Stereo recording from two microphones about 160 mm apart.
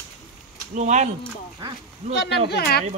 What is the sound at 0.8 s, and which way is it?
Speech, 50° right (ahead or behind).